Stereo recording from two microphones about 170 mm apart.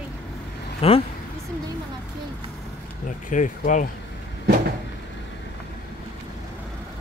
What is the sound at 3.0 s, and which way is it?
Speech, 50° left (ahead or behind).